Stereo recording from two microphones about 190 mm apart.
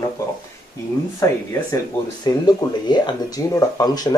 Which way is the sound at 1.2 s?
15° left (ahead or behind).